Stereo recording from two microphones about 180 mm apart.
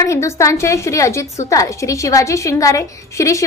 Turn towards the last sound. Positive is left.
turn(degrees=15)  # may be behind; listen again after turning